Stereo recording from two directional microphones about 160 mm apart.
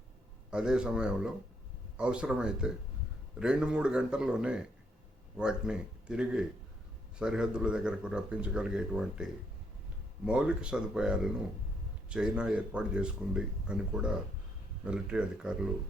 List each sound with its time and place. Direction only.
0.5 s speech: 5° right (ahead or behind)